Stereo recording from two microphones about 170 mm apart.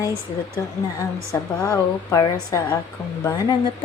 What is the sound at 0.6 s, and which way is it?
Speech, 15° left (ahead or behind).